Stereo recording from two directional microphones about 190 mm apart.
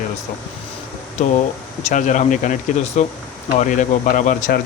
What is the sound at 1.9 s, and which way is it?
Speech, 40° left (ahead or behind).